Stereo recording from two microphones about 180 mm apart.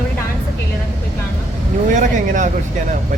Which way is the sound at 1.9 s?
45° right (ahead or behind).